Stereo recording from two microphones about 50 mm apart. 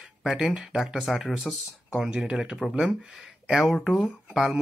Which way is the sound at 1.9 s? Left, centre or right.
Centre.